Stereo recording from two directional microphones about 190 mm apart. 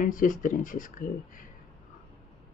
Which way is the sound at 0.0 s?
45° left (ahead or behind).